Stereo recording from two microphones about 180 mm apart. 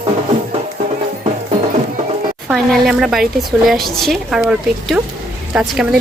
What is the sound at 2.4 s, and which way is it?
A woman's voice, centre (ahead or behind).